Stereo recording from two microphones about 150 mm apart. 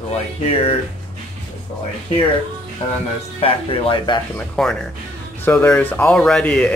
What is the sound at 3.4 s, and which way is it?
Speech, 30° left (ahead or behind).